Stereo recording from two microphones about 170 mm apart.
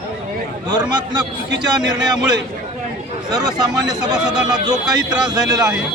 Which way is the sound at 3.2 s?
25° right (ahead or behind).